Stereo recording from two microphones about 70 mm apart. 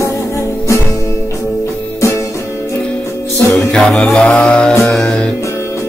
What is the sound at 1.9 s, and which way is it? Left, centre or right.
Music, left.